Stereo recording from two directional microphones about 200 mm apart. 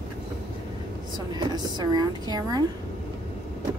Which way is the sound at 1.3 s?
20° right (ahead or behind).